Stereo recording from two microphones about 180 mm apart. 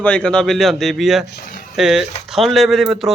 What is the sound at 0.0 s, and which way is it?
A man's voice, 5° left (ahead or behind).